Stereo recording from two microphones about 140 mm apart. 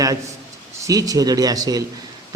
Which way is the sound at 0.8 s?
25° right (ahead or behind).